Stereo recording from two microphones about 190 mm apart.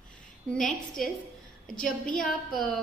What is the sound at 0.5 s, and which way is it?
A woman's voice, centre (ahead or behind).